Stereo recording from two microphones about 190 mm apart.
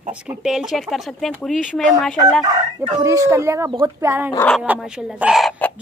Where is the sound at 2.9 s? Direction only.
15° right (ahead or behind).